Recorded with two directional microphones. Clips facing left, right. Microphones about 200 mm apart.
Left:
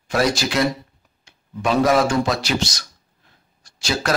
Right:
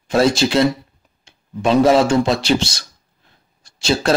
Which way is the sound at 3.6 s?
25° right (ahead or behind).